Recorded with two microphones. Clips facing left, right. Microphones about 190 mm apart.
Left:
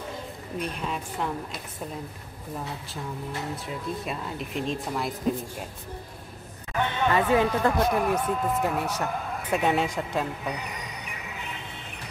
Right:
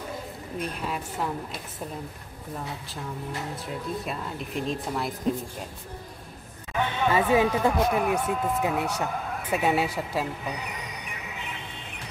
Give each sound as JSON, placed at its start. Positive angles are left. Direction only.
{"t": 0.6, "sound": "speech", "side_deg": -5}
{"t": 3.6, "sound": "speech", "side_deg": 0}
{"t": 6.7, "sound": "speech", "side_deg": 0}